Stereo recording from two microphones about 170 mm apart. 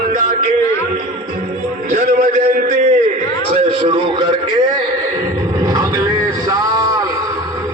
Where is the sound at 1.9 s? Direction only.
45° right (ahead or behind).